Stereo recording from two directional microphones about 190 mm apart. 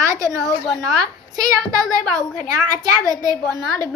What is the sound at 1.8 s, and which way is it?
Speech, 5° left (ahead or behind).